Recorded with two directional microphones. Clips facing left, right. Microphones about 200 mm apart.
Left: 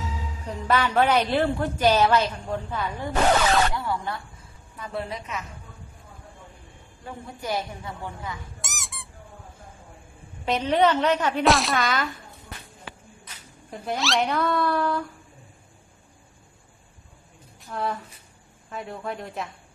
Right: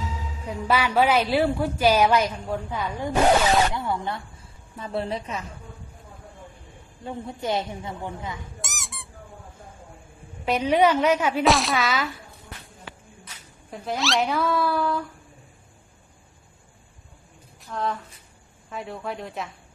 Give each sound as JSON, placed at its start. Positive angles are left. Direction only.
{"t": 0.5, "sound": "a woman's voice", "side_deg": -10}
{"t": 7.1, "sound": "a woman's voice", "side_deg": -25}
{"t": 8.5, "sound": "squeak", "side_deg": 0}
{"t": 10.4, "sound": "a woman's voice", "side_deg": -10}
{"t": 13.2, "sound": "speech", "side_deg": 0}
{"t": 17.6, "sound": "speech", "side_deg": 5}